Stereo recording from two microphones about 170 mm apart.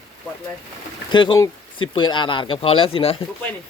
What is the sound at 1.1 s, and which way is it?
Speech, 25° left (ahead or behind).